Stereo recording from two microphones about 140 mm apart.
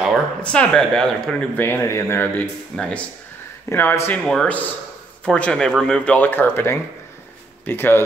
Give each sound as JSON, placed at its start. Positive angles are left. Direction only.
{"t": 0.4, "sound": "speech", "side_deg": 10}
{"t": 1.6, "sound": "speech", "side_deg": 15}
{"t": 4.2, "sound": "speech", "side_deg": 5}